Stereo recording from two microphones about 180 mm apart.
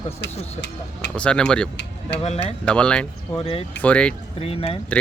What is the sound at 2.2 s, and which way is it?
Speech, 35° left (ahead or behind).